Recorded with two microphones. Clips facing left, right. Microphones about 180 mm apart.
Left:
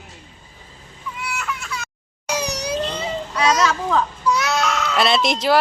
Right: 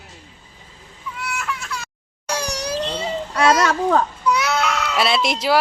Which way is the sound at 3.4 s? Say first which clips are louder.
Right 2 dB; 55° right (ahead or behind).